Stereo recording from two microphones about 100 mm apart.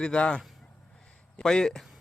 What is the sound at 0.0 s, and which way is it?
A man's voice, 10° left (ahead or behind).